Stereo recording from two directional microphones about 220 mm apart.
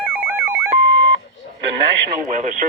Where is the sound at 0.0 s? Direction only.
5° right (ahead or behind).